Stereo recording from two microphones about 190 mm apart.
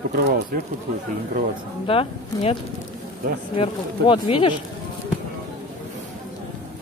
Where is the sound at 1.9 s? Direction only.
30° left (ahead or behind).